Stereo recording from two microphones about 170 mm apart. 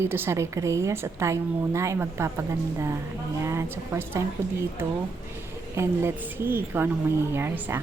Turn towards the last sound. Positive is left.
turn(degrees=-15)  # may be behind; listen again after turning